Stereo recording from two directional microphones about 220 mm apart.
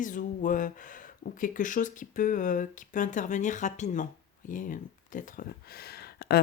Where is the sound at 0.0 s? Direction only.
35° left (ahead or behind).